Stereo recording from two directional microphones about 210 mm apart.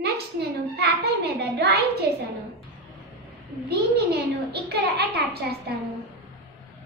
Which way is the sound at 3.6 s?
50° right (ahead or behind).